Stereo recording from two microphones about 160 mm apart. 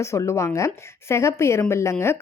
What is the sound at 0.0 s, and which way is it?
A woman's voice, 20° left (ahead or behind).